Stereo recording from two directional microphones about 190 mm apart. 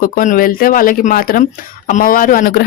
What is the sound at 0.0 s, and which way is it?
Speech, 45° left (ahead or behind).